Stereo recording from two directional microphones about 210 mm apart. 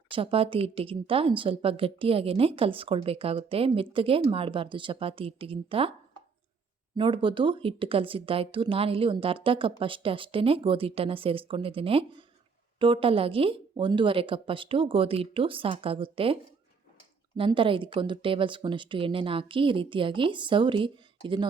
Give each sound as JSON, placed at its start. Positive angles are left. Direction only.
{"t": 0.1, "sound": "a woman's voice", "side_deg": -25}
{"t": 6.9, "sound": "a woman's voice", "side_deg": -25}